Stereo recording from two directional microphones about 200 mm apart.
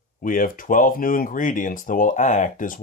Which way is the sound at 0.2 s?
45° left (ahead or behind).